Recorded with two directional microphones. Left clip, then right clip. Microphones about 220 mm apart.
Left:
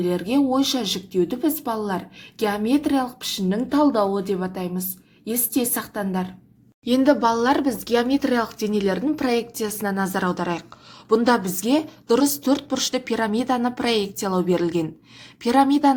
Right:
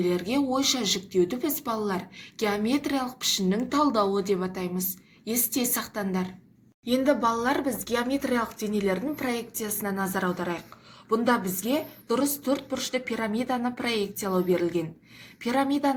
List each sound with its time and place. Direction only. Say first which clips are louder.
0.0 s speech: left 4 dB; 30° left (ahead or behind)